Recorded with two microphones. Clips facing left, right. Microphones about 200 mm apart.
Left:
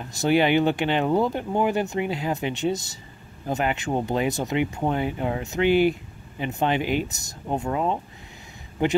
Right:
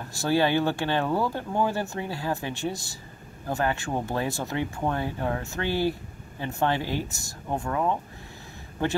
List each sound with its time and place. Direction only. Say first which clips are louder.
0.0 s a man's voice: left 3 dB; 20° left (ahead or behind)